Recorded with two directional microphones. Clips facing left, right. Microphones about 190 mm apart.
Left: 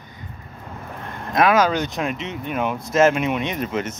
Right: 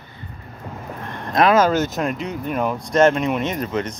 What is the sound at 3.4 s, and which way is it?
Speech, 45° right (ahead or behind).